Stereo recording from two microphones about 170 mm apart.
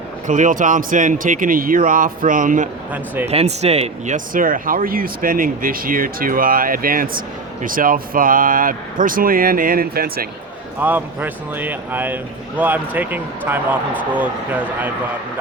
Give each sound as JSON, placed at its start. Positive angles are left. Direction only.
{"t": 0.3, "sound": "speech", "side_deg": -50}
{"t": 3.2, "sound": "speech", "side_deg": -40}
{"t": 10.8, "sound": "speech", "side_deg": -10}